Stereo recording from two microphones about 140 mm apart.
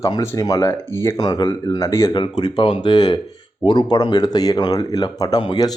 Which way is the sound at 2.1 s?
35° left (ahead or behind).